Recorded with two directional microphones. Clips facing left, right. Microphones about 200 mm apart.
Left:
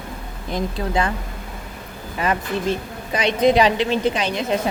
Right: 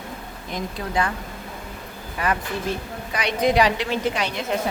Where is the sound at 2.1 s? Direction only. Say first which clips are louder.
Left 3 dB; 25° left (ahead or behind).